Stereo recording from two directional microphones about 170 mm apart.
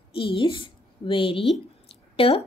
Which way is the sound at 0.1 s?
30° left (ahead or behind).